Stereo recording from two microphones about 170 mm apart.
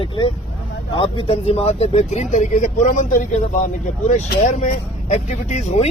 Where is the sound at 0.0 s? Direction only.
30° left (ahead or behind).